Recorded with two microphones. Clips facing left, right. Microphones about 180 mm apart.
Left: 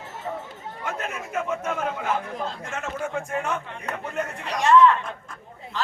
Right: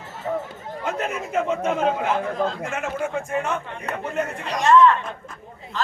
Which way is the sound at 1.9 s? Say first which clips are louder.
Right 5 dB; 90° right.